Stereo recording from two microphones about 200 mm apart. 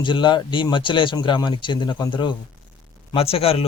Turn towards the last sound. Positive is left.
turn(degrees=30)  # may be behind; listen again after turning